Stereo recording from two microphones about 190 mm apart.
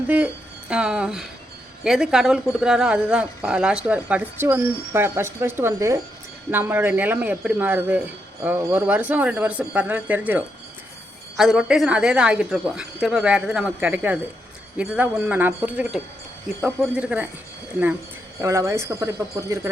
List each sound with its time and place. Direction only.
0.1 s speech: 10° right (ahead or behind)
18.3 s speech: 15° right (ahead or behind)